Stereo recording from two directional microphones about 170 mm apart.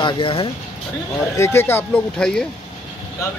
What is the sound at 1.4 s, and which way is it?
Speech, 15° left (ahead or behind).